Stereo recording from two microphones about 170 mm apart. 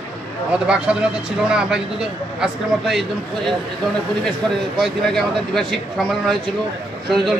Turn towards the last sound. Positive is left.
turn(degrees=0)  # may be behind; listen again after turning